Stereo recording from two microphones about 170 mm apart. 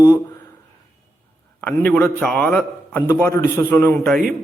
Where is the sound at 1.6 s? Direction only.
10° left (ahead or behind).